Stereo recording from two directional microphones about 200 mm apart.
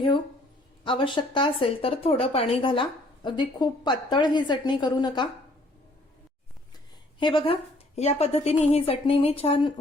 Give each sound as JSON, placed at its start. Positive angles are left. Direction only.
{"t": 0.9, "sound": "a woman's voice", "side_deg": 25}
{"t": 7.2, "sound": "a woman's voice", "side_deg": 25}